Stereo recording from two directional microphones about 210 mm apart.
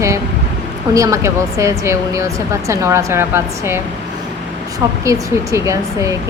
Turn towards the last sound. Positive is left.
turn(degrees=-15)  # may be behind; listen again after turning